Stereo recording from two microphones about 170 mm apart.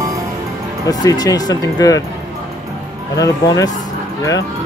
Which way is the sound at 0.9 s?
20° left (ahead or behind).